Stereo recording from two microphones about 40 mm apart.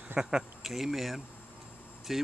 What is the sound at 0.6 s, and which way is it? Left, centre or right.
Speech, centre.